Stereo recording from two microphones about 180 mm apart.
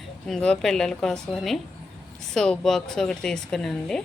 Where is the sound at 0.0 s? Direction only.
5° left (ahead or behind).